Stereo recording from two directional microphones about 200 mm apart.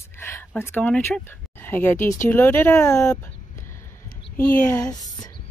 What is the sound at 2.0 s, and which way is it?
Speech, 40° left (ahead or behind).